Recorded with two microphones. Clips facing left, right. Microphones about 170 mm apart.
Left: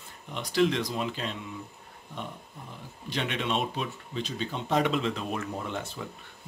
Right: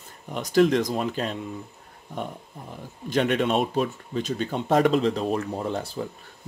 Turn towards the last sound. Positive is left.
turn(degrees=-35)  # may be behind; listen again after turning